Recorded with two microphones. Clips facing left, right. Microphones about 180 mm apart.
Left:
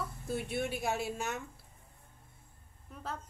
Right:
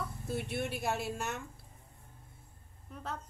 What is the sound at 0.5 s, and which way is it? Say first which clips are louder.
Speech: left 1 dB; centre (ahead or behind).